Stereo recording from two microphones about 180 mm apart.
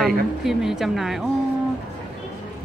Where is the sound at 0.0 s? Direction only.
Centre (ahead or behind).